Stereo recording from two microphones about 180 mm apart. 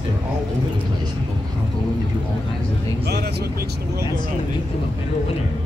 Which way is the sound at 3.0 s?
65° right (ahead or behind).